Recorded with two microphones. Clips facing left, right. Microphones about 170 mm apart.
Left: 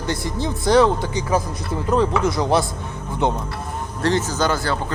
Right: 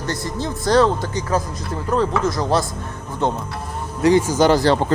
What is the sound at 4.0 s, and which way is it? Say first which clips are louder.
Speech: right 6 dB; 10° right (ahead or behind).